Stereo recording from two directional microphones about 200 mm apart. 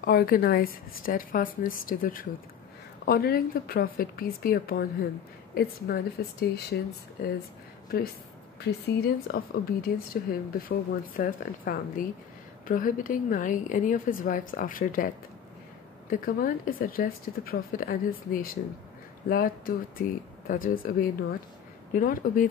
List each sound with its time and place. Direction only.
0.0 s a woman's voice: 45° left (ahead or behind)
8.5 s a woman's voice: 55° left (ahead or behind)